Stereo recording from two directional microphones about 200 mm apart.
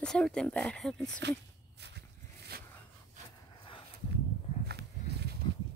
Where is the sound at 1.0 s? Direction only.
60° right (ahead or behind).